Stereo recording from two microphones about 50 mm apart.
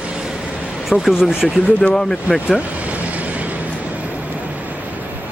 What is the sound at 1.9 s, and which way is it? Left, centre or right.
Speech, centre.